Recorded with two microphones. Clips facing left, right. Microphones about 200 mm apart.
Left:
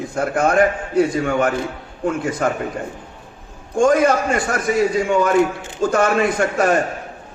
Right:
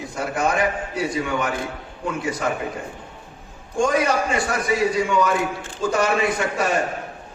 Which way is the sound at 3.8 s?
50° left (ahead or behind).